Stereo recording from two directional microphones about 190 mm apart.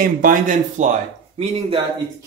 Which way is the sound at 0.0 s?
45° right (ahead or behind).